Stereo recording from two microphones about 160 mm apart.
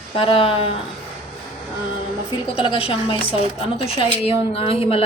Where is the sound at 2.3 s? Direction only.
30° left (ahead or behind).